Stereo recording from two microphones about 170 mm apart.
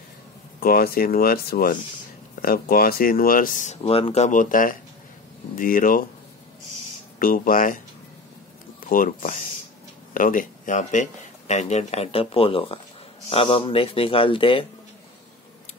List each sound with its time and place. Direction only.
0.6 s speech: 60° left (ahead or behind)
7.2 s speech: 55° left (ahead or behind)
8.8 s speech: 55° left (ahead or behind); by 14.7 s 30° left (ahead or behind)